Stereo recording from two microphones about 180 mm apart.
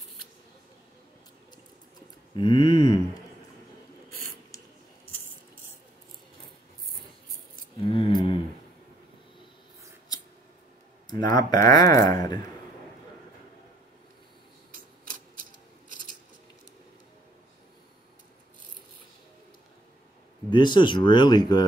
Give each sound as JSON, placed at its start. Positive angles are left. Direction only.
{"t": 2.3, "sound": "speech", "side_deg": 25}
{"t": 7.8, "sound": "a sound", "side_deg": 30}
{"t": 10.1, "sound": "mouse", "side_deg": 20}
{"t": 11.3, "sound": "speech", "side_deg": 20}
{"t": 20.4, "sound": "speech", "side_deg": 25}